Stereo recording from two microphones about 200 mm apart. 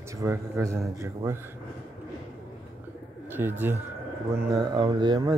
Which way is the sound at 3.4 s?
15° right (ahead or behind).